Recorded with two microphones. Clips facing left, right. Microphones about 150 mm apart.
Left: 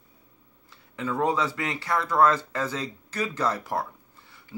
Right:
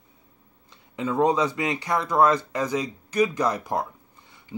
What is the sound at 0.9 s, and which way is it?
Speech, 20° right (ahead or behind).